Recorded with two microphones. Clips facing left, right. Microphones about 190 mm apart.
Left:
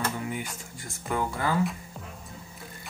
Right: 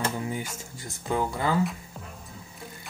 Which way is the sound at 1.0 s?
20° right (ahead or behind).